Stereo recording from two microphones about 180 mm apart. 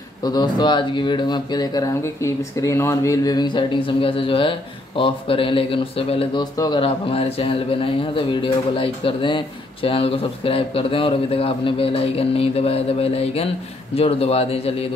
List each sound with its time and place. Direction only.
0.2 s a man's voice: 20° left (ahead or behind)